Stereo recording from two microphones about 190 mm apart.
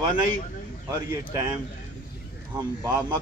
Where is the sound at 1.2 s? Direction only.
15° right (ahead or behind).